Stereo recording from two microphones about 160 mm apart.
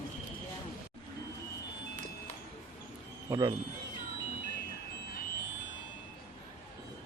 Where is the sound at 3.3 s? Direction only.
25° right (ahead or behind).